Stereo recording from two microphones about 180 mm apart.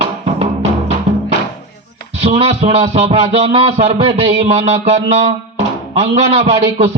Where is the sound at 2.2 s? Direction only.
35° right (ahead or behind).